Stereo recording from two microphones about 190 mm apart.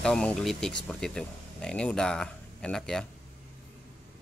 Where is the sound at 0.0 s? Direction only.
5° left (ahead or behind).